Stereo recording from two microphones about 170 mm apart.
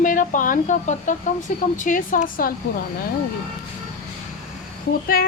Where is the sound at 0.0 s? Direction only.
50° left (ahead or behind).